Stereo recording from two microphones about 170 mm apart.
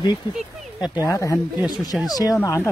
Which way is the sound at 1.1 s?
20° left (ahead or behind).